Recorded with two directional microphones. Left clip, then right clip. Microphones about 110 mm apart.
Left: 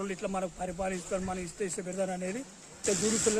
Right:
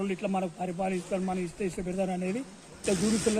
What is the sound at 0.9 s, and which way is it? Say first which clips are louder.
Speech: right 3 dB; 20° left (ahead or behind).